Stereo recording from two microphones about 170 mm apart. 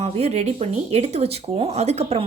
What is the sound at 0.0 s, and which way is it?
Speech, 40° right (ahead or behind).